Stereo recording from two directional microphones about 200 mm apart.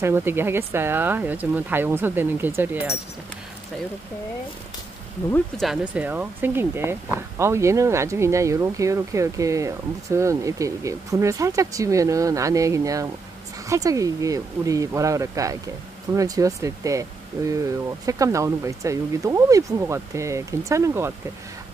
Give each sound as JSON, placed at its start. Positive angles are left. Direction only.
{"t": 0.0, "sound": "speech", "side_deg": -10}
{"t": 5.3, "sound": "speech", "side_deg": 0}